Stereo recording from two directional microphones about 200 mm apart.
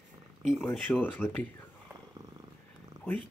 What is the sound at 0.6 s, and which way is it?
Speech, 10° left (ahead or behind).